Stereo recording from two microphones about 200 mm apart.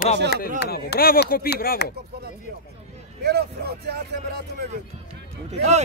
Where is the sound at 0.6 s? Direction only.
55° left (ahead or behind).